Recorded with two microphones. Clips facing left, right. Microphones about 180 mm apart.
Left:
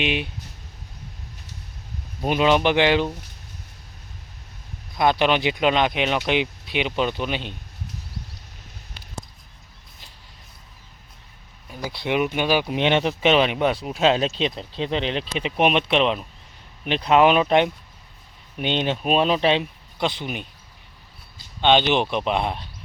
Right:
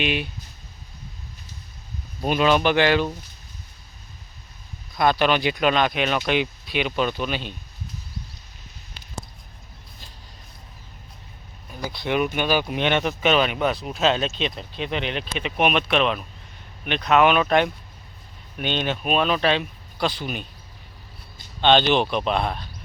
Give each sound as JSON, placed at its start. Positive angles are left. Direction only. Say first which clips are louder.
{"t": 0.0, "sound": "speech", "louder": "even", "side_deg": 20}
{"t": 2.2, "sound": "speech", "louder": "left 1 dB", "side_deg": 20}
{"t": 4.9, "sound": "speech", "louder": "even", "side_deg": 20}
{"t": 11.9, "sound": "speech", "louder": "left 1 dB", "side_deg": 20}
{"t": 12.7, "sound": "speech", "louder": "left 2 dB", "side_deg": 25}
{"t": 21.6, "sound": "speech", "louder": "even", "side_deg": 10}